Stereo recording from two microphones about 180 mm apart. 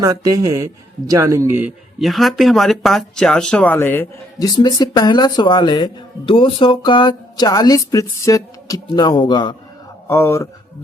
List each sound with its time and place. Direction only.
0.0 s a man's voice: 20° right (ahead or behind)
2.0 s speech: centre (ahead or behind); by 9.6 s 25° left (ahead or behind)
10.1 s speech: 15° left (ahead or behind)